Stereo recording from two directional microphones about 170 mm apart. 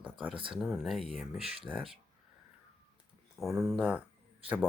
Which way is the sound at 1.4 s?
35° right (ahead or behind).